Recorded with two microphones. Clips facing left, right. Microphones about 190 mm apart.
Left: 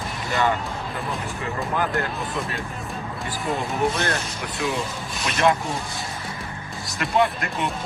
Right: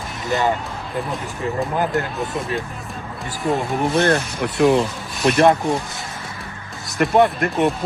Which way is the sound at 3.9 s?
55° right (ahead or behind).